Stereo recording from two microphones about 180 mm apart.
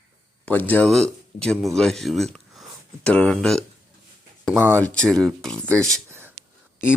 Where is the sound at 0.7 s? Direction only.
5° left (ahead or behind).